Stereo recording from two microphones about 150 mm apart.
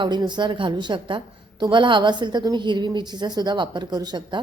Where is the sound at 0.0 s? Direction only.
30° right (ahead or behind).